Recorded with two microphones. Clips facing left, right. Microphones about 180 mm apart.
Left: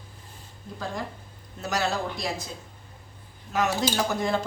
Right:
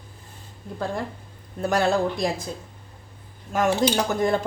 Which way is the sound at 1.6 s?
55° right (ahead or behind).